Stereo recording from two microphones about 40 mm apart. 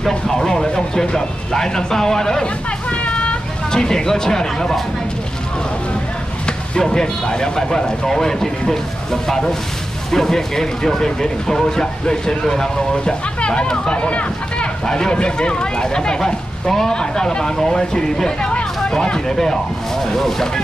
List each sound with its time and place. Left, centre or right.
0.3 s speech: centre
2.4 s a sound: left
3.7 s speech: centre
6.9 s speech: centre